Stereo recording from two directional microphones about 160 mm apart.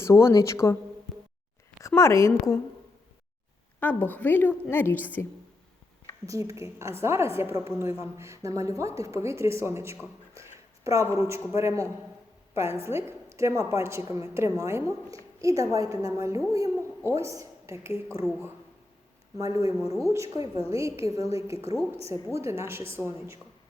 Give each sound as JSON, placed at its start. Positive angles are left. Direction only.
{"t": 0.0, "sound": "a woman's voice", "side_deg": 15}
{"t": 2.0, "sound": "a woman's voice", "side_deg": 20}
{"t": 3.8, "sound": "a woman's voice", "side_deg": 10}
{"t": 6.2, "sound": "a woman's voice", "side_deg": -20}
{"t": 19.4, "sound": "a woman's voice", "side_deg": -20}